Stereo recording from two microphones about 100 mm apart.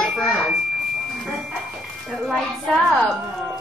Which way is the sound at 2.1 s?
Centre (ahead or behind).